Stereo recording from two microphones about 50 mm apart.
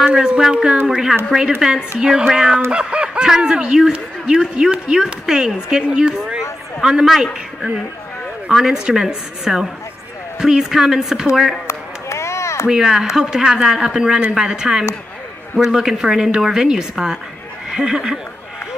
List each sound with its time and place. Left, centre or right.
0.1 s a man's voice: centre
2.7 s a sound: right
3.3 s a man's voice: centre
8.5 s a man's voice: centre
11.6 s chop: left
12.6 s a man's voice: centre